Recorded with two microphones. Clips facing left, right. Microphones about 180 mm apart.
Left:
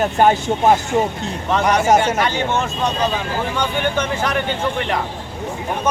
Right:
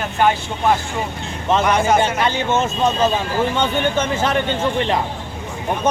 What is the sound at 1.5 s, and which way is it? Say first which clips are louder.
Speech: left 1 dB; 20° right (ahead or behind).